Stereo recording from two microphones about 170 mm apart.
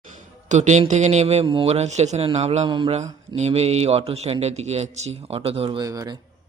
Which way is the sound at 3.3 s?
40° right (ahead or behind).